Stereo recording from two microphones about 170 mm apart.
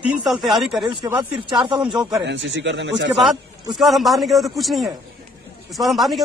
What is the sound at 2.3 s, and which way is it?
Speech, 90° right.